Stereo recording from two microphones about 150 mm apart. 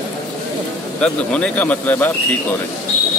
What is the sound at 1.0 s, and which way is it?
Speech, 5° left (ahead or behind).